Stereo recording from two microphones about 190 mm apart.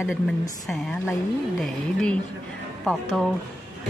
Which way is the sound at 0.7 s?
Centre (ahead or behind).